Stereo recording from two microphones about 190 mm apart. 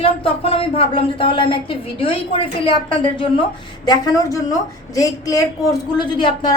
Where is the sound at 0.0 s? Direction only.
30° left (ahead or behind).